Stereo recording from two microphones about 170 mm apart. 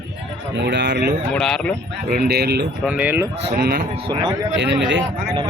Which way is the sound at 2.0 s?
60° right (ahead or behind).